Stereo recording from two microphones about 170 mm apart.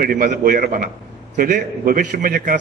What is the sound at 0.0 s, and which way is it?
A man's voice, 55° right (ahead or behind).